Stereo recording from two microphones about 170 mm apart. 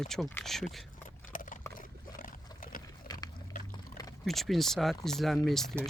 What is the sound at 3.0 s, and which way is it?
Pig, 25° left (ahead or behind).